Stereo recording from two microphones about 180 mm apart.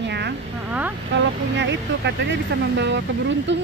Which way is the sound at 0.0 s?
70° right (ahead or behind).